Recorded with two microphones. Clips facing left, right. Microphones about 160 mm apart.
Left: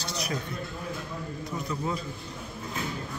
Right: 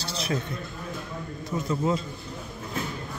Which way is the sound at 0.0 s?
30° right (ahead or behind).